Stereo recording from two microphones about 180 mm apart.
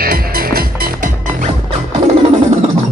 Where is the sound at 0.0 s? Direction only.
55° right (ahead or behind).